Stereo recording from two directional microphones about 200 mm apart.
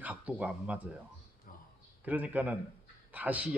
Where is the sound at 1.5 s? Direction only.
45° left (ahead or behind).